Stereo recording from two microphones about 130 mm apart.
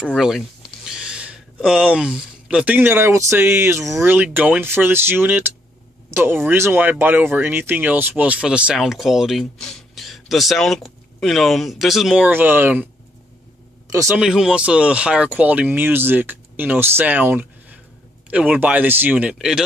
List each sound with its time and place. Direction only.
0.2 s speech: 5° right (ahead or behind)
12.3 s speech: 15° right (ahead or behind)
14.1 s speech: 5° right (ahead or behind)
19.3 s speech: 5° right (ahead or behind)